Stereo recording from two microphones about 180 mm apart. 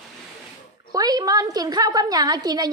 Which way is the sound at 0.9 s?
20° right (ahead or behind).